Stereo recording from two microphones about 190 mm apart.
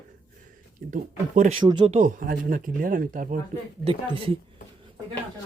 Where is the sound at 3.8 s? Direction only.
30° right (ahead or behind).